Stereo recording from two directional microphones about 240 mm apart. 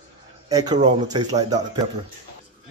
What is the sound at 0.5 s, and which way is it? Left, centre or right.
Speech, centre.